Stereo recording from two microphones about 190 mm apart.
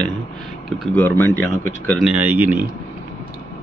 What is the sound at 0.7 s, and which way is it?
A man's voice, 5° left (ahead or behind).